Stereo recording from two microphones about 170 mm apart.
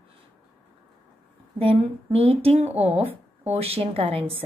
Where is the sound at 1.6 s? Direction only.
35° right (ahead or behind).